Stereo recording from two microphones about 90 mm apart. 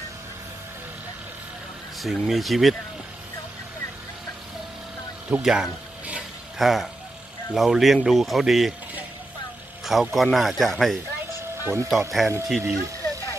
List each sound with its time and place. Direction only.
2.0 s speech: centre (ahead or behind)
5.3 s speech: 5° right (ahead or behind)
9.8 s speech: centre (ahead or behind)
11.6 s speech: 30° right (ahead or behind)
11.9 s speech: centre (ahead or behind)